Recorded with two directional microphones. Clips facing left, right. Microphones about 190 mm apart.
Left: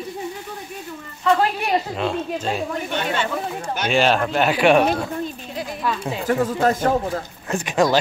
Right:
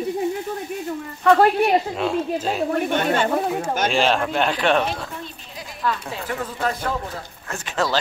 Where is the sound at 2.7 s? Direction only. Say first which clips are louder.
Right 4 dB; 50° right (ahead or behind).